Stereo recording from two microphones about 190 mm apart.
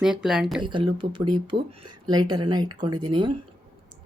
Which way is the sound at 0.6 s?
25° right (ahead or behind).